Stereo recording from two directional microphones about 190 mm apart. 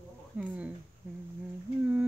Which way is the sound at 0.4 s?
5° right (ahead or behind).